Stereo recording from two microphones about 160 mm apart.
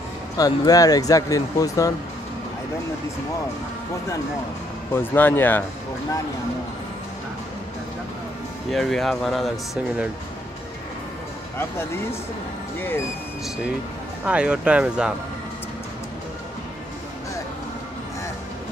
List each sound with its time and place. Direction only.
0.4 s speech: 25° left (ahead or behind)
4.9 s speech: 10° left (ahead or behind)
8.7 s speech: centre (ahead or behind)
11.5 s speech: 15° left (ahead or behind)
14.2 s speech: 5° right (ahead or behind)